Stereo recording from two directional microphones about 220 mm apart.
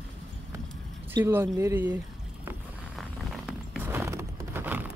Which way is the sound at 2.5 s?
5° right (ahead or behind).